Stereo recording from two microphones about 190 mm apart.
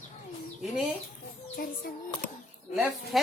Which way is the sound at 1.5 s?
50° left (ahead or behind).